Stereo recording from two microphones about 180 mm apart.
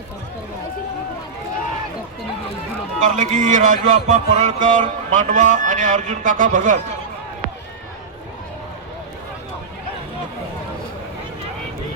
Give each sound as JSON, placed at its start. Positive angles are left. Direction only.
{"t": 3.0, "sound": "speech", "side_deg": -45}